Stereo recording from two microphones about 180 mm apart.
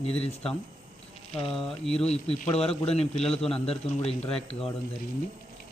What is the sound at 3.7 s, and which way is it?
Speech, 35° left (ahead or behind).